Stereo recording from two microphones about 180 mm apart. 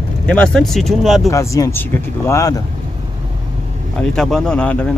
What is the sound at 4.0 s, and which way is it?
Speech, centre (ahead or behind).